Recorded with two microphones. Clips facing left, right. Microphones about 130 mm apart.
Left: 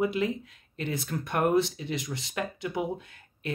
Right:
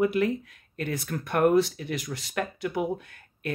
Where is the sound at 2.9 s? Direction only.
25° left (ahead or behind).